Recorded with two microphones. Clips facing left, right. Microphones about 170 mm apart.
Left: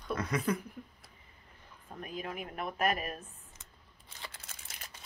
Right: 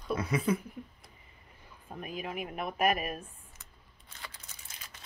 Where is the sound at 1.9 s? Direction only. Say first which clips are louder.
Right 2 dB; 10° right (ahead or behind).